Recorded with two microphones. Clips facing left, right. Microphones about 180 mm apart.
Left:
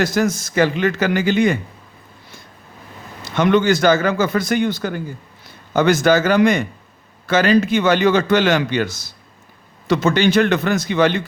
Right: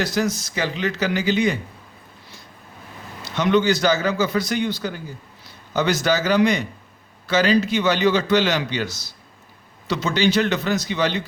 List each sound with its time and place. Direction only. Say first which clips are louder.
0.0 s a man's voice: left 4 dB; 50° left (ahead or behind)
3.2 s a man's voice: left 3 dB; 50° left (ahead or behind)